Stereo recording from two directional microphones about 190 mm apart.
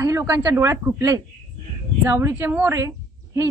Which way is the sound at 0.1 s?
15° right (ahead or behind).